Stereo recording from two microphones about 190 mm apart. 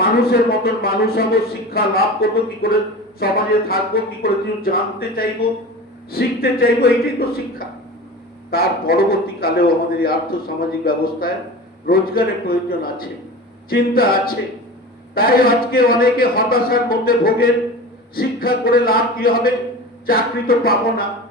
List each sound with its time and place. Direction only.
0.0 s a man's voice: 55° left (ahead or behind)
8.4 s a man's voice: 55° left (ahead or behind)